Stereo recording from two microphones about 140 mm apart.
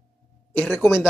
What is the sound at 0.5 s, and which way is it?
Speech, 10° left (ahead or behind).